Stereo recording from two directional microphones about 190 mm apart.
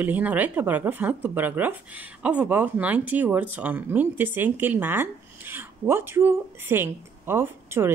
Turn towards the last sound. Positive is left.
turn(degrees=-10)  # may be behind; listen again after turning